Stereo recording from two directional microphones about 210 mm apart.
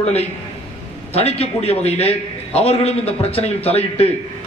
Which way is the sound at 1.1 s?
30° left (ahead or behind).